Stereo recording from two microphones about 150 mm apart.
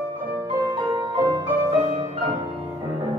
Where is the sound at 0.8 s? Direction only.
25° right (ahead or behind).